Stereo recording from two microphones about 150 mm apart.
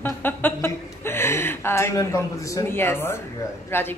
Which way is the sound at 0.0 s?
15° left (ahead or behind).